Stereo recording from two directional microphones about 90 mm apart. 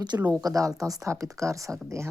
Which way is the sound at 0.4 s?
40° right (ahead or behind).